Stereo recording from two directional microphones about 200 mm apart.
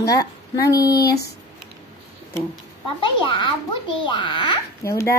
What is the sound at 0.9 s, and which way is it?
Speech, 50° left (ahead or behind).